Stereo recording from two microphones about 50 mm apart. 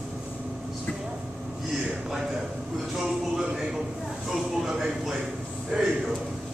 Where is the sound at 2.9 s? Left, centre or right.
Centre.